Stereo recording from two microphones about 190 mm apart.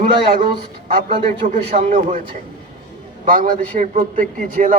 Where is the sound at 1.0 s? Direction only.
40° right (ahead or behind).